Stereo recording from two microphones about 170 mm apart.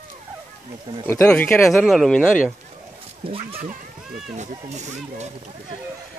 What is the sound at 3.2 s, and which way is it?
Speech, 35° right (ahead or behind).